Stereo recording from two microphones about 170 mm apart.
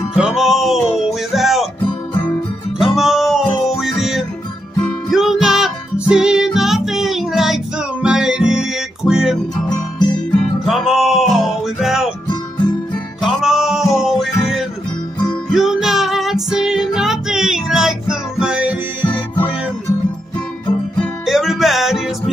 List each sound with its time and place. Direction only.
0.1 s music: 5° right (ahead or behind)
2.8 s music: centre (ahead or behind)
10.6 s music: centre (ahead or behind)
12.3 s music: 25° left (ahead or behind)
13.2 s music: centre (ahead or behind)
21.0 s music: centre (ahead or behind)